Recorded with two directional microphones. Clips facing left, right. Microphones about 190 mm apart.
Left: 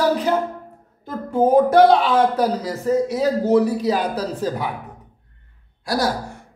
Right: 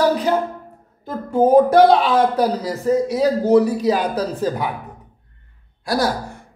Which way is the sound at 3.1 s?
40° right (ahead or behind).